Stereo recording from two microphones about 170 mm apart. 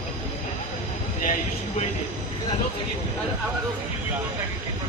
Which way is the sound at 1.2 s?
50° left (ahead or behind).